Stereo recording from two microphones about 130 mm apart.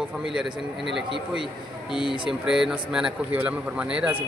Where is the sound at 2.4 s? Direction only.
5° right (ahead or behind).